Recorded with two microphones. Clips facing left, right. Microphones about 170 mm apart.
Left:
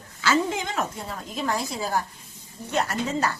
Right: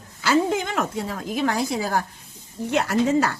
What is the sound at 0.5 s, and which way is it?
A woman's voice, 60° right (ahead or behind).